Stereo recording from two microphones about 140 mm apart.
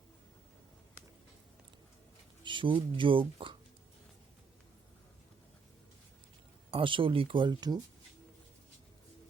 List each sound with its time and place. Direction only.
2.4 s speech: 35° right (ahead or behind)
6.7 s speech: 35° right (ahead or behind)